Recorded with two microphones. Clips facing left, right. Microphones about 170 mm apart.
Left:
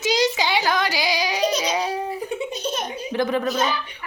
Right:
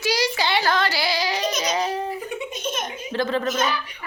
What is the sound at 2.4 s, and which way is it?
Giggle, 35° left (ahead or behind).